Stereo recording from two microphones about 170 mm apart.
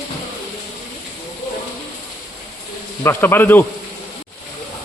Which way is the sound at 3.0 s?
15° left (ahead or behind).